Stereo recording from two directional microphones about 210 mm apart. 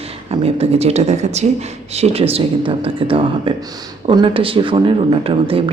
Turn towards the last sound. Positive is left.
turn(degrees=-25)  # may be behind; listen again after turning